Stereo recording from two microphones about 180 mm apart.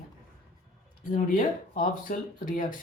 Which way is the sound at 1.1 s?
50° left (ahead or behind).